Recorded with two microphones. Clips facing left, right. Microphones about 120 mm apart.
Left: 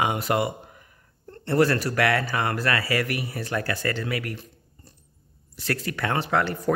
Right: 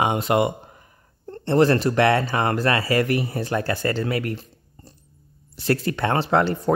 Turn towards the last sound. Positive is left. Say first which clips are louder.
# right 4 dB
turn(degrees=-25)  # may be behind; listen again after turning